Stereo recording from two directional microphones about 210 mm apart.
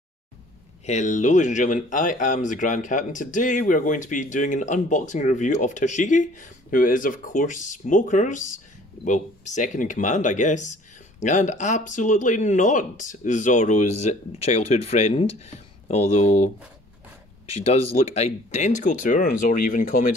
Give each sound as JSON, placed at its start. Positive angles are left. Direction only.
{"t": 0.8, "sound": "speech", "side_deg": 35}